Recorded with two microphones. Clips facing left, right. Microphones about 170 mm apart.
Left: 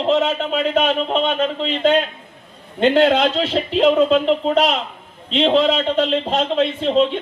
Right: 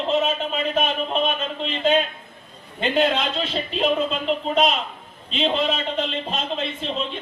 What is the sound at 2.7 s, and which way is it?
A man's voice, 85° left.